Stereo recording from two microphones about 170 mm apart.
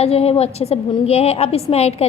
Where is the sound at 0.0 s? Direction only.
35° left (ahead or behind).